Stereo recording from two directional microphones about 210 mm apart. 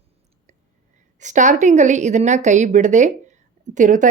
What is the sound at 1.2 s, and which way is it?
A woman's voice, 35° right (ahead or behind).